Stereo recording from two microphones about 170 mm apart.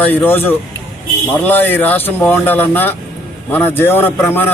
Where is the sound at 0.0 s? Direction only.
10° left (ahead or behind).